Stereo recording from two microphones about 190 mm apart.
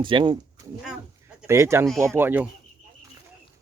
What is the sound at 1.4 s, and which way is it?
Speech, 15° right (ahead or behind).